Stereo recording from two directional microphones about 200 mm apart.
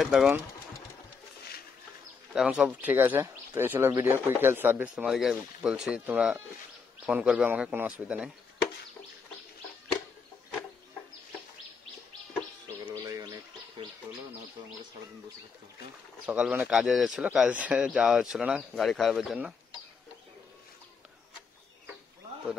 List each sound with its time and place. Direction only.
0.0 s speech: centre (ahead or behind)
2.3 s speech: 5° right (ahead or behind)
12.9 s gargling: 15° right (ahead or behind)
16.3 s speech: 5° right (ahead or behind)